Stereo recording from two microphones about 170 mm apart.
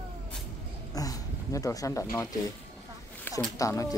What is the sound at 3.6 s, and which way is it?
Speech, 20° left (ahead or behind).